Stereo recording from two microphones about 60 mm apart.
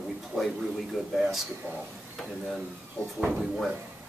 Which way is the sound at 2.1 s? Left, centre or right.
Centre.